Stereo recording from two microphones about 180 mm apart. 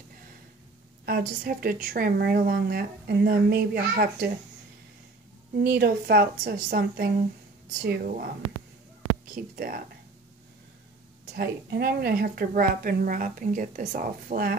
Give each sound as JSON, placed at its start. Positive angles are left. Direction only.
{"t": 1.0, "sound": "a woman's voice", "side_deg": -55}
{"t": 5.6, "sound": "a woman's voice", "side_deg": -60}
{"t": 9.3, "sound": "a woman's voice", "side_deg": -55}
{"t": 11.3, "sound": "a woman's voice", "side_deg": -60}